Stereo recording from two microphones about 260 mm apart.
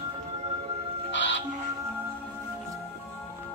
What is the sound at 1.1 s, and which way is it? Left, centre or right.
Music, left.